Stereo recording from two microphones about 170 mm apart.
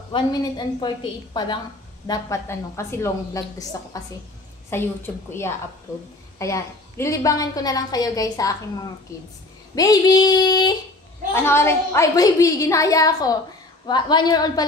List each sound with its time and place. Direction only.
0.1 s a woman's voice: 25° left (ahead or behind)
11.3 s a woman's voice: 15° left (ahead or behind)